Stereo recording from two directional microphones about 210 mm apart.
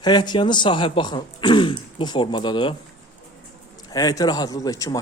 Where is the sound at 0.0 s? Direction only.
20° left (ahead or behind).